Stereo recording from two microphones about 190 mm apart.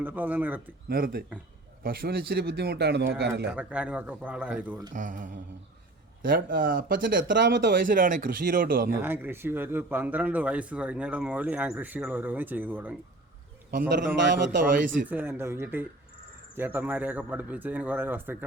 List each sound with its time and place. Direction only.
0.0 s speech: 10° right (ahead or behind)
0.9 s speech: 50° right (ahead or behind)
3.5 s speech: 5° right (ahead or behind)
4.9 s speech: 45° right (ahead or behind)
8.9 s speech: 10° right (ahead or behind)
13.7 s a man's voice: 55° right (ahead or behind)
15.1 s speech: 10° right (ahead or behind)